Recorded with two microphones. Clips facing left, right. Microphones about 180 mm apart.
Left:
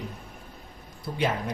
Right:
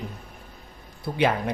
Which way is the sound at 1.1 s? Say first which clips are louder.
Right 4 dB; 60° right (ahead or behind).